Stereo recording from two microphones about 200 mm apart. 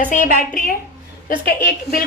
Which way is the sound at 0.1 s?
40° left (ahead or behind).